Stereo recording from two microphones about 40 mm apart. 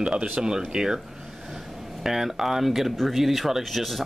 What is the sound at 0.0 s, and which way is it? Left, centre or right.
Speech, right.